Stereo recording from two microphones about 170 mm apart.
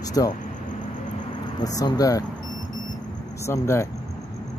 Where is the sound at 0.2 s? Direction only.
20° left (ahead or behind).